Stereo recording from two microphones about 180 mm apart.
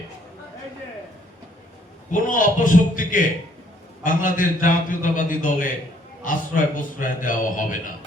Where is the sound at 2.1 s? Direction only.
45° left (ahead or behind).